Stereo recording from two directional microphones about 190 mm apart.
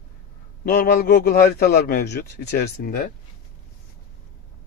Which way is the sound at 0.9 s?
50° left (ahead or behind).